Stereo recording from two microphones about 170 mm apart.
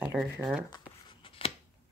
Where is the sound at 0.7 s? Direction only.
25° left (ahead or behind).